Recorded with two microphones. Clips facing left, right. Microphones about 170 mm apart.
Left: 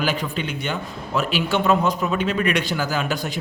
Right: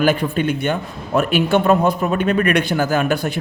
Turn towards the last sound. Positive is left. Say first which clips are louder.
# right 6 dB
turn(degrees=-55)  # may be behind; listen again after turning